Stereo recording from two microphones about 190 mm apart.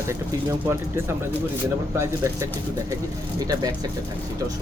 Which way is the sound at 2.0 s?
15° right (ahead or behind).